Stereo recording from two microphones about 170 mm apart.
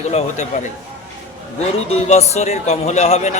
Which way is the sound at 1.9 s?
40° left (ahead or behind).